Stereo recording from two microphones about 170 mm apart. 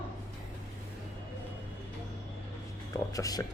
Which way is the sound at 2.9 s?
20° left (ahead or behind).